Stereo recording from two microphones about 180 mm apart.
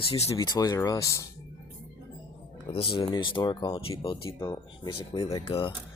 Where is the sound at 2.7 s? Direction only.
30° left (ahead or behind).